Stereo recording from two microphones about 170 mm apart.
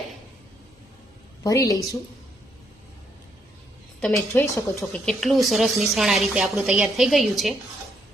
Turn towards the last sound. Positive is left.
turn(degrees=0)  # may be behind; listen again after turning